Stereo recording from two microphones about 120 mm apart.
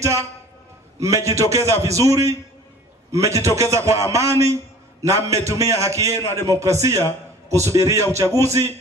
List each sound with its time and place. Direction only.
0.9 s a man's voice: 25° right (ahead or behind)